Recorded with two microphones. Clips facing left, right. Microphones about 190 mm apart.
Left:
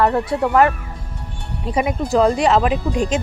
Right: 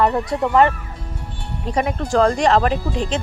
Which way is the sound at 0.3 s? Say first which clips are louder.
Left 1 dB; 5° left (ahead or behind).